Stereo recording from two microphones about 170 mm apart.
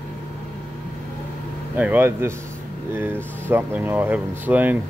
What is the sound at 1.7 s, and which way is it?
Speech, 10° right (ahead or behind).